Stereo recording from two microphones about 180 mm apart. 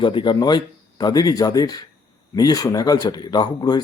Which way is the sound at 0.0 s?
25° left (ahead or behind).